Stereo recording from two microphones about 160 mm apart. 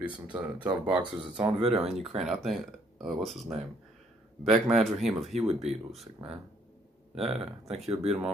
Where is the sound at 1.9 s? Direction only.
Centre (ahead or behind).